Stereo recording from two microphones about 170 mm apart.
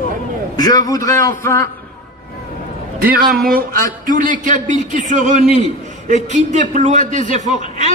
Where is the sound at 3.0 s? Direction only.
60° right (ahead or behind).